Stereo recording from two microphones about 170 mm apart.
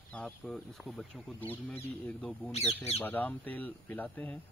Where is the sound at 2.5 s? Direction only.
40° left (ahead or behind).